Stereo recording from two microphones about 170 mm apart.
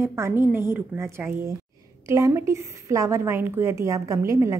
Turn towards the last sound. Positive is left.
turn(degrees=-20)  # may be behind; listen again after turning